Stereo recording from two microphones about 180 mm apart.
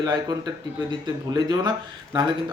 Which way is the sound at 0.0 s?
20° right (ahead or behind).